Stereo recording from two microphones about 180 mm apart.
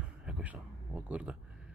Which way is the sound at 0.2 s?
5° right (ahead or behind).